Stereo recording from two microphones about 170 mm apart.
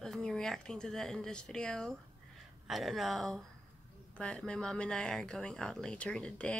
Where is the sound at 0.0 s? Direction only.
5° left (ahead or behind).